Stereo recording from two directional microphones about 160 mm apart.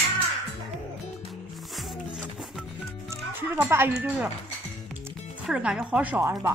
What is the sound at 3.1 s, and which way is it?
Speech, 15° right (ahead or behind).